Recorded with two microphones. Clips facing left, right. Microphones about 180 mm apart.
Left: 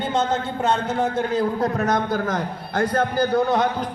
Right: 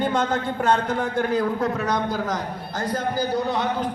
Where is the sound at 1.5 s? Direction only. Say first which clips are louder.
Left 2 dB; 45° left (ahead or behind).